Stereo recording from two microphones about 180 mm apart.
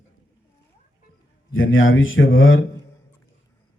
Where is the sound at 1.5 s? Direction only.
90° left.